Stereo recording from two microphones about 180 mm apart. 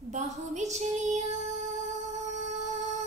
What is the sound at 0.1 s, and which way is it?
Child singing, 40° right (ahead or behind).